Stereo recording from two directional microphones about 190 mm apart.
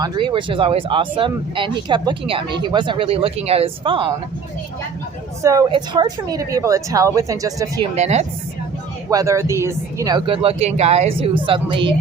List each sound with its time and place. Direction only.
0.0 s speech: 20° right (ahead or behind)
5.4 s speech: 15° right (ahead or behind)
7.9 s speech: 35° right (ahead or behind)
9.0 s speech: 15° right (ahead or behind)